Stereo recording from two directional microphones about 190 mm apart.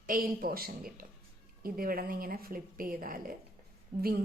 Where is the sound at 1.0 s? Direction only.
50° right (ahead or behind).